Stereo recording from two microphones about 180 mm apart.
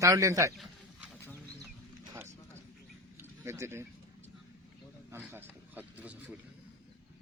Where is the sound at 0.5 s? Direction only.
Centre (ahead or behind).